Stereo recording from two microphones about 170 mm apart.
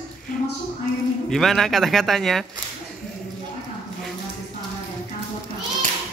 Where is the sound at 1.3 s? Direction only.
Centre (ahead or behind).